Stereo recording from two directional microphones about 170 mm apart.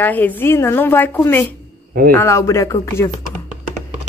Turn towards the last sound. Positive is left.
turn(degrees=15)  # may be behind; listen again after turning